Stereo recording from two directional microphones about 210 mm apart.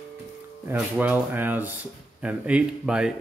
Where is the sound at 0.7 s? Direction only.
5° right (ahead or behind).